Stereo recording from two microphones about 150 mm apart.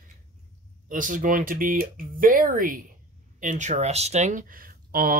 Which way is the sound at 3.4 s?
55° right (ahead or behind).